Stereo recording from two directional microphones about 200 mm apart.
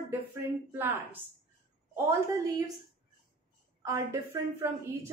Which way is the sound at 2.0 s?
15° right (ahead or behind).